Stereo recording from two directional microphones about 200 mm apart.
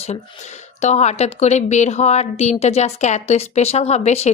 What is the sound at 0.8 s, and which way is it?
A woman's voice, 35° left (ahead or behind).